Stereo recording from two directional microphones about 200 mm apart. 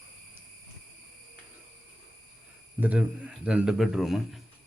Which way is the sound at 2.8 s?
5° right (ahead or behind).